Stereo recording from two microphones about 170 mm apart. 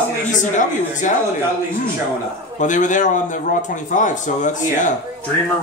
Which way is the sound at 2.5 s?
45° left (ahead or behind).